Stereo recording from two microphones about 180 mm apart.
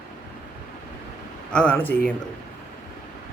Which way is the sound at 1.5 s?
10° left (ahead or behind).